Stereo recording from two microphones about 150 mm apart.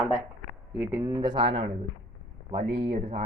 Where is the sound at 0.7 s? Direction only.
10° right (ahead or behind).